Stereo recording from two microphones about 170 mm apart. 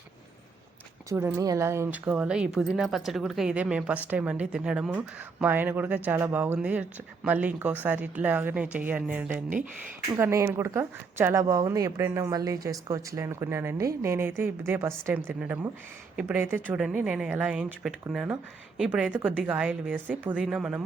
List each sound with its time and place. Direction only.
1.1 s a woman's voice: 15° right (ahead or behind)